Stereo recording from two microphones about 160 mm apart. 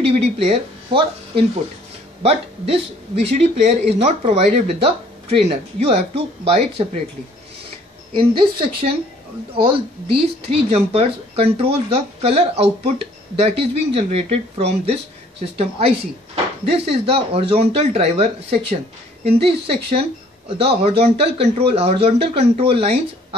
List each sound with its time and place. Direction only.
0.0 s speech: 40° right (ahead or behind)
3.3 s speech: 45° right (ahead or behind)
8.1 s speech: 35° right (ahead or behind)